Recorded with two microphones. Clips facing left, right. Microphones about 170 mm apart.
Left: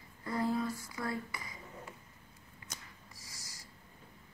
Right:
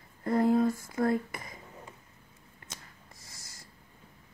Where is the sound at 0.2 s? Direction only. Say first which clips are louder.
Right 9 dB; 50° right (ahead or behind).